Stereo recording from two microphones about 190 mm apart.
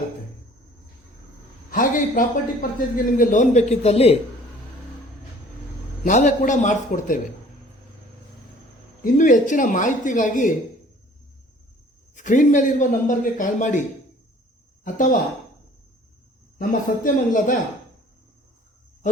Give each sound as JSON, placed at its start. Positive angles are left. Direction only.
{"t": 1.7, "sound": "a man's voice", "side_deg": 45}
{"t": 6.1, "sound": "a man's voice", "side_deg": 40}
{"t": 9.0, "sound": "a man's voice", "side_deg": 40}
{"t": 12.1, "sound": "a man's voice", "side_deg": 40}
{"t": 16.6, "sound": "a man's voice", "side_deg": 45}